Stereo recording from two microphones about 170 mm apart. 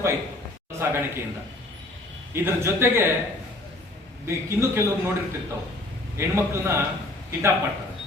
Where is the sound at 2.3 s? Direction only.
15° right (ahead or behind).